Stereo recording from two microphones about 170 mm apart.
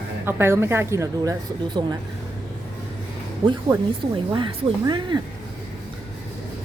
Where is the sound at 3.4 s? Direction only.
30° right (ahead or behind).